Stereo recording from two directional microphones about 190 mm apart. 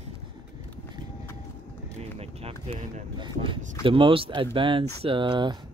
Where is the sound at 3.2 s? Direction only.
25° right (ahead or behind).